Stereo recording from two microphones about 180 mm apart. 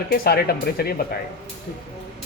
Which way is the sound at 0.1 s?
60° left (ahead or behind).